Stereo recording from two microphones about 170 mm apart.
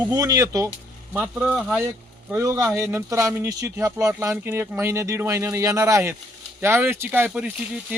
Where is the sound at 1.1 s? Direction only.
10° right (ahead or behind).